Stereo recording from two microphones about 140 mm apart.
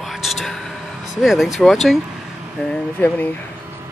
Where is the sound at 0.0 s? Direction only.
Centre (ahead or behind).